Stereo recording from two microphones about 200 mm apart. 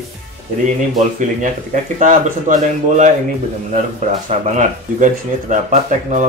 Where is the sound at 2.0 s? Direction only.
40° right (ahead or behind).